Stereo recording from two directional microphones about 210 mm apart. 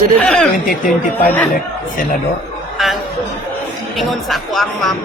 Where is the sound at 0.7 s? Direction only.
45° left (ahead or behind).